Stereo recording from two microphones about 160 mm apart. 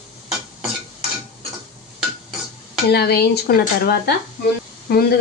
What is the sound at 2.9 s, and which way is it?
Speech, 90° left.